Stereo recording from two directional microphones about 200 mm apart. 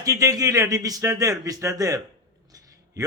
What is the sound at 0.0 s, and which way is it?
Speech, 15° right (ahead or behind).